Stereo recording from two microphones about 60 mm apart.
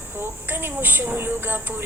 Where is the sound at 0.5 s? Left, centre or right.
Right.